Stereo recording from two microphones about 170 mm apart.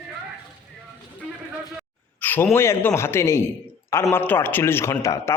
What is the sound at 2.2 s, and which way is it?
A man's voice, 10° left (ahead or behind).